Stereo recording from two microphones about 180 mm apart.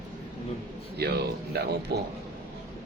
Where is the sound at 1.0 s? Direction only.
65° right (ahead or behind).